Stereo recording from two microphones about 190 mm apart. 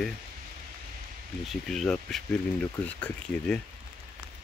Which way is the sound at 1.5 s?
Centre (ahead or behind).